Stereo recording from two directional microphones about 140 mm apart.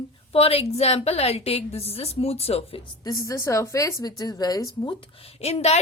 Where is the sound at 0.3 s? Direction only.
45° left (ahead or behind).